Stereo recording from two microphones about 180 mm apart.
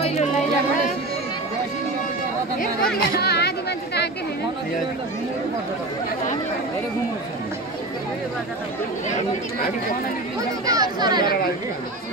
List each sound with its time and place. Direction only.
0.0 s a sound: 35° left (ahead or behind)
2.6 s a woman's voice: 55° left (ahead or behind)
10.7 s speech: 20° right (ahead or behind)